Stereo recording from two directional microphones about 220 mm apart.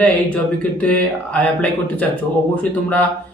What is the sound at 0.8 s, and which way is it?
Speech, 5° left (ahead or behind).